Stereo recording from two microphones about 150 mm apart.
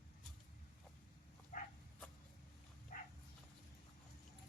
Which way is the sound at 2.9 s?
60° left (ahead or behind).